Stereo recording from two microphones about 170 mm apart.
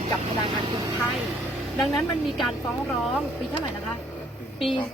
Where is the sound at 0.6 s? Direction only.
25° right (ahead or behind).